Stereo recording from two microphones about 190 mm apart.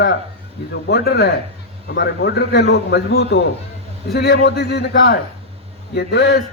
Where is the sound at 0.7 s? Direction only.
60° left (ahead or behind).